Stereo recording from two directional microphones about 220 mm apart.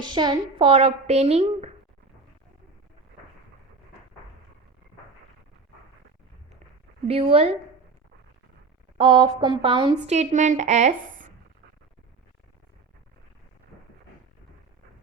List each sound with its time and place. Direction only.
0.0 s speech: 20° right (ahead or behind)
7.1 s speech: 25° right (ahead or behind)
9.0 s a woman's voice: 20° right (ahead or behind)